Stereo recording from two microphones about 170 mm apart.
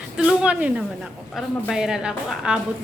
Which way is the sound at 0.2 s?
5° right (ahead or behind).